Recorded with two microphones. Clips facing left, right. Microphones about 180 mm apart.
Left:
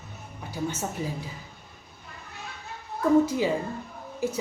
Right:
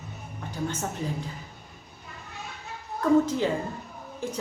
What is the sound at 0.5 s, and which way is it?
Speech, 10° left (ahead or behind).